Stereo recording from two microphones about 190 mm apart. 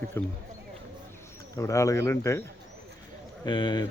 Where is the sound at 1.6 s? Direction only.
15° left (ahead or behind).